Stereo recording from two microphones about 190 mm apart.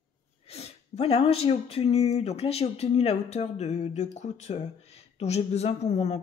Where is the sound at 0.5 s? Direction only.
35° left (ahead or behind).